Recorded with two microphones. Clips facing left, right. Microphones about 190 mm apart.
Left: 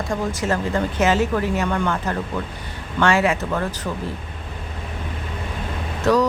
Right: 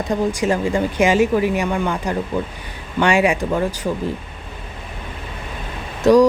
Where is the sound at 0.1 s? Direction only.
15° right (ahead or behind).